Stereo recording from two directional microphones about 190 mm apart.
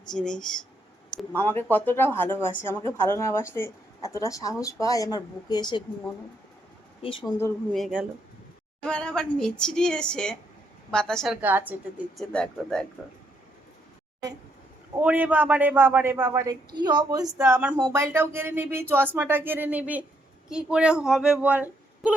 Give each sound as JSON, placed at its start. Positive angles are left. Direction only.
{"t": 0.1, "sound": "speech", "side_deg": 5}
{"t": 7.0, "sound": "speech", "side_deg": 25}
{"t": 7.7, "sound": "speech", "side_deg": 0}
{"t": 12.3, "sound": "speech", "side_deg": 5}
{"t": 15.0, "sound": "speech", "side_deg": -10}